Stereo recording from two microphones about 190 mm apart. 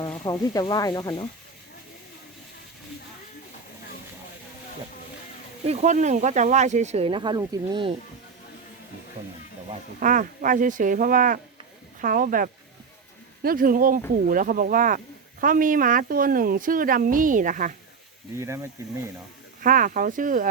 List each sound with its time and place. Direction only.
0.3 s speech: 20° left (ahead or behind)
5.6 s speech: 35° right (ahead or behind)
10.0 s speech: 45° right (ahead or behind)
18.3 s speech: 15° right (ahead or behind)
19.6 s speech: 45° right (ahead or behind)